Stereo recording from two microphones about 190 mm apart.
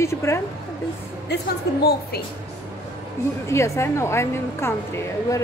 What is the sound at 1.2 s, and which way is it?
A woman's voice, 60° left (ahead or behind).